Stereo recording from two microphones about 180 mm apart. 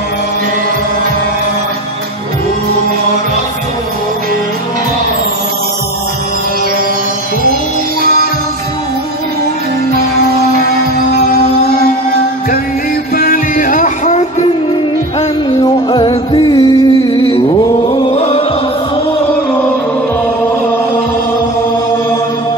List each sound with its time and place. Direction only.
13.1 s music: 50° left (ahead or behind)
15.6 s music: 25° left (ahead or behind)
17.8 s chant: 30° left (ahead or behind)